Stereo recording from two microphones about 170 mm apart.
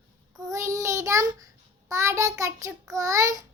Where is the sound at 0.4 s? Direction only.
20° right (ahead or behind).